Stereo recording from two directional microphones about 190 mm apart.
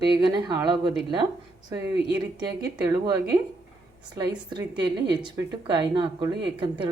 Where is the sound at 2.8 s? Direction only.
20° right (ahead or behind).